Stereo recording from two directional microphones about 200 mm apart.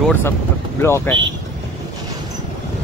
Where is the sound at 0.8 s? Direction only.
10° left (ahead or behind).